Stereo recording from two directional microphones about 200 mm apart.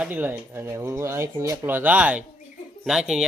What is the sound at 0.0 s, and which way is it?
Speech, 10° right (ahead or behind).